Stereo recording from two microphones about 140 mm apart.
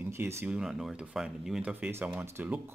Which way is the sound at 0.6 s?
5° right (ahead or behind).